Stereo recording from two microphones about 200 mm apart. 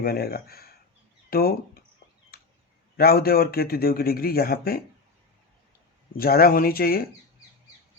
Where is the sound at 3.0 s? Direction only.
50° left (ahead or behind).